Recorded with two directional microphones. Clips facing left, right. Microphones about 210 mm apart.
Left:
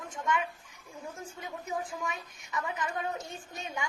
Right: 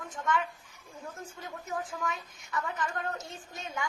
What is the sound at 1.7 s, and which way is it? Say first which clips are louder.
A woman's voice: right 1 dB; 15° left (ahead or behind).